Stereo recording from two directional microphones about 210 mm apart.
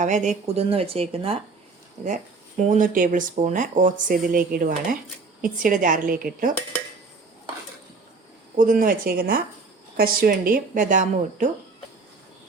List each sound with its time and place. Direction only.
0.0 s speech: 35° right (ahead or behind)
8.5 s speech: 40° right (ahead or behind)